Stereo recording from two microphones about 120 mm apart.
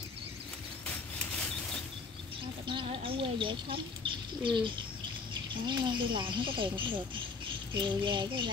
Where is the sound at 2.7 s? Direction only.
50° right (ahead or behind).